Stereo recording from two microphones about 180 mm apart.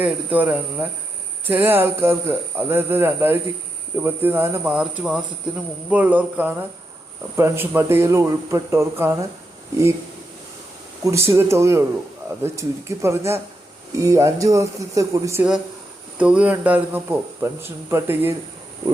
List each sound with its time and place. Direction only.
0.0 s speech: 10° right (ahead or behind)
11.0 s speech: 15° right (ahead or behind)
16.1 s speech: 5° right (ahead or behind)